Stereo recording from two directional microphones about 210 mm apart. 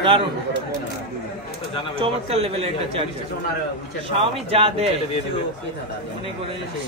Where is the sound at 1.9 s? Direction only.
25° right (ahead or behind).